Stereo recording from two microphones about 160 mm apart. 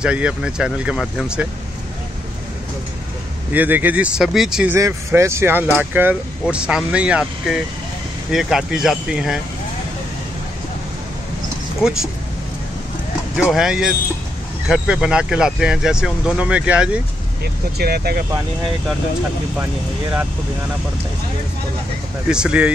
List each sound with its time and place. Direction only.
0.0 s speech: 5° right (ahead or behind)
3.5 s speech: 10° right (ahead or behind)
4.7 s speech: 20° right (ahead or behind); by 9.4 s 5° right (ahead or behind)
11.8 s speech: 5° right (ahead or behind)
13.4 s speech: 5° right (ahead or behind)
17.7 s speech: 80° right
22.3 s speech: 5° right (ahead or behind)